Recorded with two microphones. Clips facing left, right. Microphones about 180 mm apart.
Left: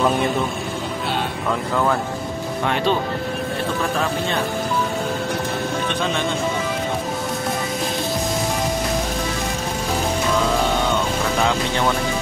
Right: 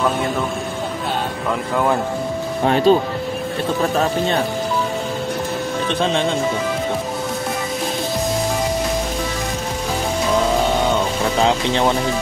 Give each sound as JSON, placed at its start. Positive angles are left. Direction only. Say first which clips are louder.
{"t": 2.6, "sound": "speech", "louder": "right 7 dB", "side_deg": -35}
{"t": 11.4, "sound": "speech", "louder": "right 5 dB", "side_deg": -25}